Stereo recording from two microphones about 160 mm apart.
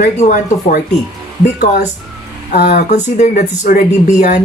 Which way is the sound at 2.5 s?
60° left (ahead or behind).